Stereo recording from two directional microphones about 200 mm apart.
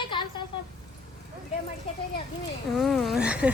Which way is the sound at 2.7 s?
Centre (ahead or behind).